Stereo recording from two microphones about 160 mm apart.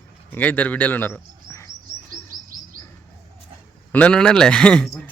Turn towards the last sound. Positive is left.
turn(degrees=5)  # may be behind; listen again after turning